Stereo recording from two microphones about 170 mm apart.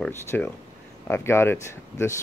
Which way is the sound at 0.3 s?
10° left (ahead or behind).